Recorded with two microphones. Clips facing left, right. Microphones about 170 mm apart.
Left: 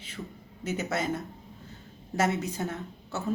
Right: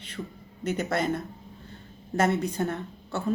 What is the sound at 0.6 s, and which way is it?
Speech, 5° left (ahead or behind).